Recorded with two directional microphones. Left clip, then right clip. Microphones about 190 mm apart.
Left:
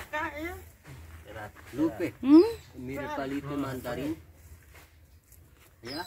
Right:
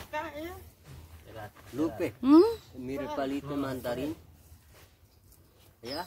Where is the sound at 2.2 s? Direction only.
25° right (ahead or behind).